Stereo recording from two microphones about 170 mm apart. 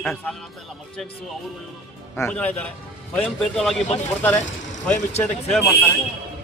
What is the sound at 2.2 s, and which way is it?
A man's voice, 10° left (ahead or behind).